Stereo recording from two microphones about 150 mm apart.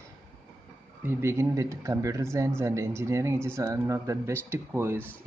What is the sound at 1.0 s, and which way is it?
Speech, 15° right (ahead or behind).